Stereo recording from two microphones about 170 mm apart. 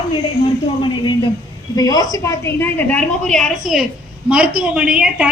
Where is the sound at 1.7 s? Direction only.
20° left (ahead or behind).